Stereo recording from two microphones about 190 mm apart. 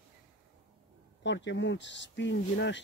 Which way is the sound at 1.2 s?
70° left (ahead or behind).